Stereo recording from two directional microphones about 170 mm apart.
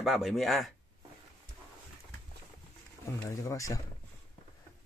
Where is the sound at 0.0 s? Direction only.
Centre (ahead or behind).